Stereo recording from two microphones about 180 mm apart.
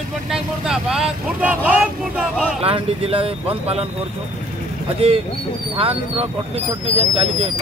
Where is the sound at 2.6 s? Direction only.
30° right (ahead or behind).